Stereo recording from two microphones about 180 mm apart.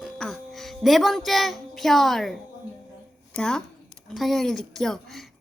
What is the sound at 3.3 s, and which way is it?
Speech, 5° left (ahead or behind).